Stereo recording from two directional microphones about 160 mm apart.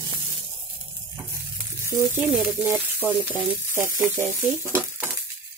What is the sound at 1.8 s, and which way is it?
Speech, 15° right (ahead or behind).